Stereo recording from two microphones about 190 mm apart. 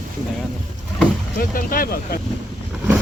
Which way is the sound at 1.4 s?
50° left (ahead or behind).